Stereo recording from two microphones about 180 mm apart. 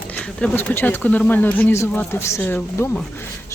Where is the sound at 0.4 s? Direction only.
10° left (ahead or behind).